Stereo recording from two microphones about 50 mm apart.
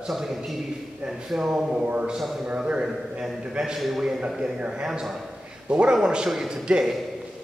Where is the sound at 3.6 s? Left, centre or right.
Centre.